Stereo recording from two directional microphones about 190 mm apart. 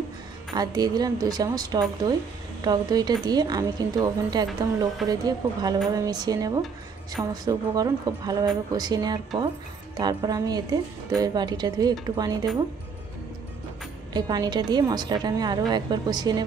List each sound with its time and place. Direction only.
0.6 s speech: 20° right (ahead or behind)
14.1 s speech: 20° right (ahead or behind)